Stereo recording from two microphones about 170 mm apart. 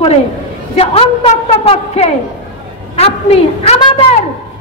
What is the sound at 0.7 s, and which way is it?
A man's voice, 35° left (ahead or behind).